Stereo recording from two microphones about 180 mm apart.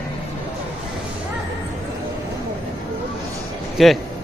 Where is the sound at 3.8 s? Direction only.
Centre (ahead or behind).